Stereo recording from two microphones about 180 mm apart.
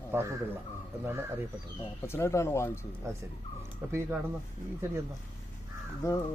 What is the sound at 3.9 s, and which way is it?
Speech, 15° right (ahead or behind).